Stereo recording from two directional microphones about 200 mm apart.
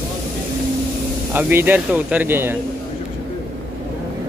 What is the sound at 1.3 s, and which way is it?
Speech, 10° right (ahead or behind).